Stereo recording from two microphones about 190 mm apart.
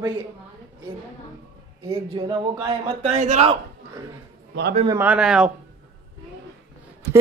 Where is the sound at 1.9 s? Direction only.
25° right (ahead or behind).